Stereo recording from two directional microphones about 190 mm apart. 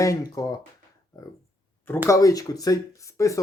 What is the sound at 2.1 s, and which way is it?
Speech, 20° left (ahead or behind).